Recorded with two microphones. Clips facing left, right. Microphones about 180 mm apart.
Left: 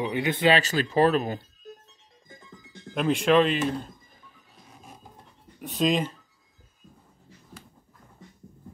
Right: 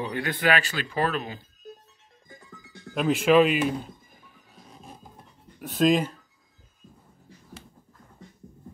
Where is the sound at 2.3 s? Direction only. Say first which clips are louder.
Even; 20° left (ahead or behind).